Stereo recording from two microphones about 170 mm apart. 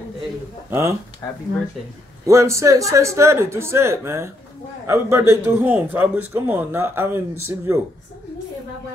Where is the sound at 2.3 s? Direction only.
15° right (ahead or behind).